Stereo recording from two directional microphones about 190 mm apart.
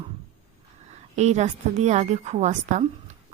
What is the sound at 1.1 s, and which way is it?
Speech, 35° right (ahead or behind).